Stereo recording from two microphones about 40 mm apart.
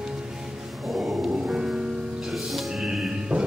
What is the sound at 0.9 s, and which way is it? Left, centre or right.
Dog, centre.